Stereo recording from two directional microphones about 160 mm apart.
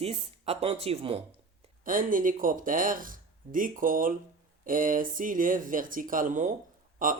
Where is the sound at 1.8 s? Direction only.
60° right (ahead or behind).